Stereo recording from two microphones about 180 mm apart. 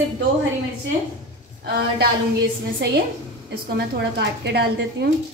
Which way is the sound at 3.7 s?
70° right (ahead or behind).